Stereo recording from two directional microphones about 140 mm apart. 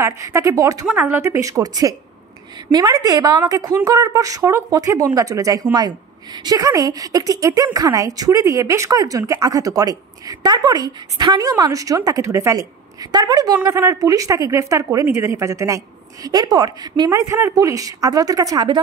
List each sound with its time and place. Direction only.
0.0 s a woman's voice: 20° right (ahead or behind)
0.8 s a woman's voice: 10° right (ahead or behind); by 17.1 s 30° right (ahead or behind)
17.1 s a woman's voice: 20° right (ahead or behind)